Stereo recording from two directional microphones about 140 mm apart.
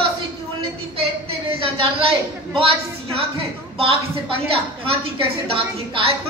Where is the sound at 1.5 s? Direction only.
40° right (ahead or behind).